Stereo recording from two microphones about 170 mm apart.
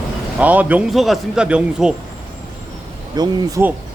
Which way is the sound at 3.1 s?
25° right (ahead or behind).